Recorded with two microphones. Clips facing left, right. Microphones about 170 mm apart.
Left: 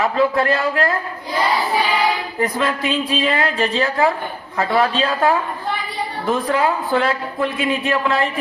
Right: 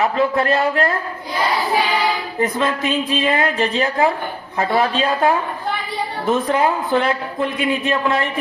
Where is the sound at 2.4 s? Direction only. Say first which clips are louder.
Right 1 dB; 20° right (ahead or behind).